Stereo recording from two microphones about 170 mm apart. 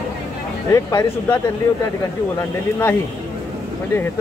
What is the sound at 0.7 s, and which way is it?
Speech, 20° left (ahead or behind).